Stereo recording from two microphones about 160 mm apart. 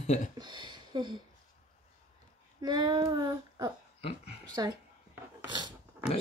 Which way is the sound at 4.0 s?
35° left (ahead or behind).